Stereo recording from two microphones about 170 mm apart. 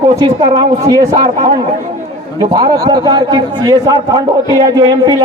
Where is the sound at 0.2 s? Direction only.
25° right (ahead or behind).